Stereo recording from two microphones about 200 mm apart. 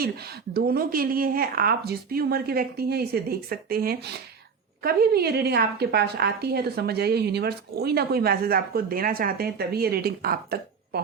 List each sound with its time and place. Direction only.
0.0 s a woman's voice: 50° right (ahead or behind)